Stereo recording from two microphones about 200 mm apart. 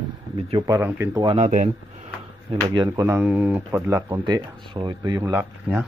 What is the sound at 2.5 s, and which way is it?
Speech, 20° right (ahead or behind).